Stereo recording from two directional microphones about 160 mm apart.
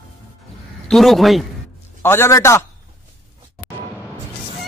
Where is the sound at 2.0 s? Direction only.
15° left (ahead or behind).